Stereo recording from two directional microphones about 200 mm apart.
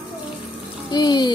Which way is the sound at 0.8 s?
20° left (ahead or behind).